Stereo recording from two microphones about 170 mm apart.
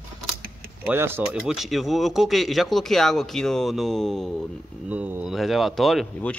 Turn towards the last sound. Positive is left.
turn(degrees=0)  # may be behind; listen again after turning